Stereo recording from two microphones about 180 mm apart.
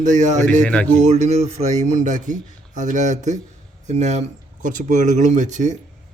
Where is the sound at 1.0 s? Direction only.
40° right (ahead or behind).